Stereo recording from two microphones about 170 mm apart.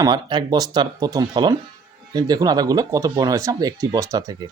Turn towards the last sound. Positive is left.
turn(degrees=-20)  # may be behind; listen again after turning